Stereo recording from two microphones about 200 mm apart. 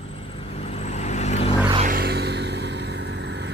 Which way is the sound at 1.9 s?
55° right (ahead or behind).